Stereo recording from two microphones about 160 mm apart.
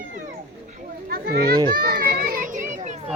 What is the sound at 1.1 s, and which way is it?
Children playing, 70° right (ahead or behind).